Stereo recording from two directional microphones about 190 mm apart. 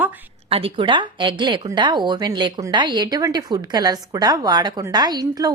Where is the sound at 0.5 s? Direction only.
30° right (ahead or behind).